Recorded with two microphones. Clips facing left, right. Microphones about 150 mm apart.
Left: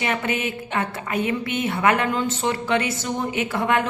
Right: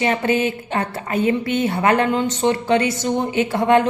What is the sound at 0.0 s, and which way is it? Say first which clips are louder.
A woman's voice: right 6 dB; 30° right (ahead or behind).